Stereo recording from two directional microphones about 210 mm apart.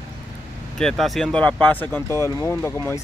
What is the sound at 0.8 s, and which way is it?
Speech, centre (ahead or behind).